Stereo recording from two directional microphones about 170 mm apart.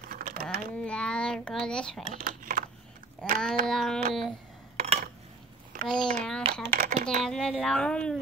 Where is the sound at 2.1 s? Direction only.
55° right (ahead or behind).